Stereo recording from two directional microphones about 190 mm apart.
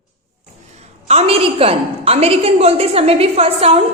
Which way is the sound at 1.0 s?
30° right (ahead or behind).